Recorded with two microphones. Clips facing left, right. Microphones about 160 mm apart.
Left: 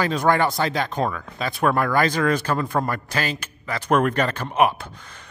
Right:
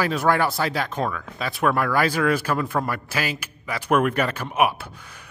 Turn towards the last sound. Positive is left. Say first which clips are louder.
# left 2 dB
turn(degrees=-10)  # may be behind; listen again after turning